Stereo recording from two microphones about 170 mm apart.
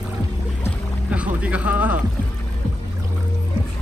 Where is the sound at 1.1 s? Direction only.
5° right (ahead or behind).